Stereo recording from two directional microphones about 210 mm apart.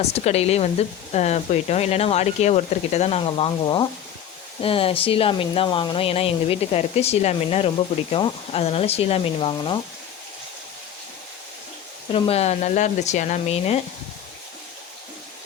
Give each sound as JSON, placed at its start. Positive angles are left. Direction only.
{"t": 0.0, "sound": "speech", "side_deg": 30}
{"t": 12.1, "sound": "speech", "side_deg": 30}